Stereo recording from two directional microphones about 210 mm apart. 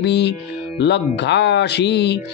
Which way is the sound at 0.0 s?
55° left (ahead or behind).